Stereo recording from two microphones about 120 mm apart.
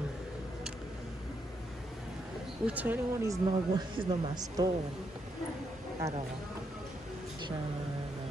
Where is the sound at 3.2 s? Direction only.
25° right (ahead or behind).